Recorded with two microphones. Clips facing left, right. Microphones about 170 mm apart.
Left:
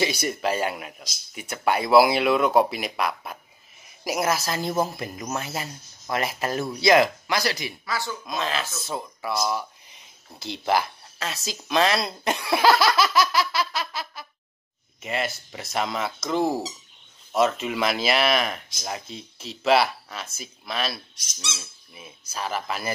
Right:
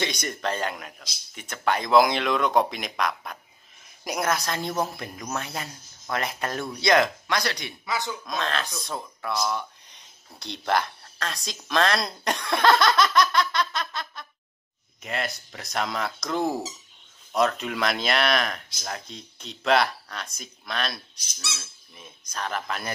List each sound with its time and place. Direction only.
0.0 s a man's voice: 5° left (ahead or behind)
7.8 s speech: 20° right (ahead or behind)
8.3 s a man's voice: 5° left (ahead or behind)